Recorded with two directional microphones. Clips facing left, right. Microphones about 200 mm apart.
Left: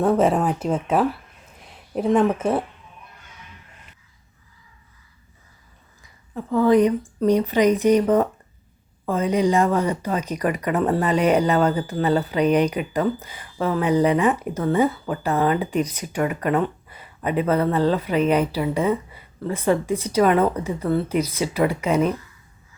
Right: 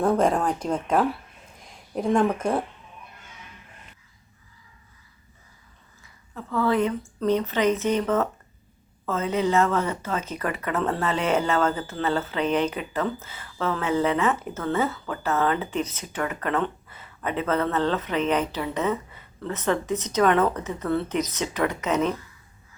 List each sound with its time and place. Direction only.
0.0 s speech: 5° left (ahead or behind)
6.0 s a sound: 15° left (ahead or behind)
7.2 s speech: 15° left (ahead or behind)